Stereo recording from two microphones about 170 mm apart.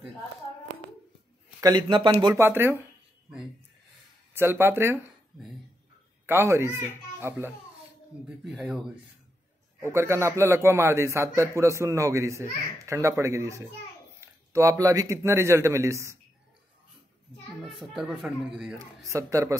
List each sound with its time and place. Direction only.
1.6 s a man's voice: 25° right (ahead or behind)
2.3 s a man's voice: 15° right (ahead or behind)
4.3 s a man's voice: 15° right (ahead or behind)
6.2 s a man's voice: 15° right (ahead or behind)
9.8 s a man's voice: 15° right (ahead or behind)
17.7 s speech: centre (ahead or behind)
19.0 s a man's voice: 15° right (ahead or behind)